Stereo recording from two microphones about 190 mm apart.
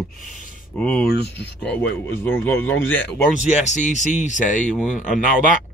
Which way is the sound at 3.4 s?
40° left (ahead or behind).